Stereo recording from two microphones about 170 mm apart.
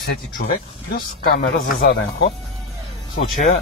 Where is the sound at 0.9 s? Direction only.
65° left (ahead or behind).